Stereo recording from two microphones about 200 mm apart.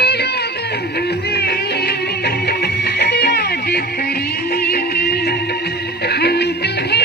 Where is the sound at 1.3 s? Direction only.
50° left (ahead or behind).